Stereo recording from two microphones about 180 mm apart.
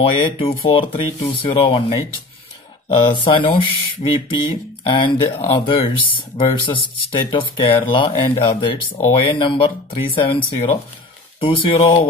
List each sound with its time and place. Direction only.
0.2 s speech: 30° left (ahead or behind)
3.0 s speech: 25° left (ahead or behind)